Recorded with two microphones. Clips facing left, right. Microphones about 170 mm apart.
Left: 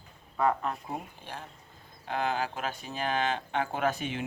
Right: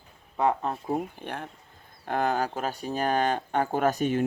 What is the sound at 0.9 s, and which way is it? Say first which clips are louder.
Speech: right 8 dB; 60° right (ahead or behind).